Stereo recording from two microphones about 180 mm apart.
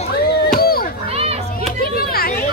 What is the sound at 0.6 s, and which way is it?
Children playing, 55° left (ahead or behind).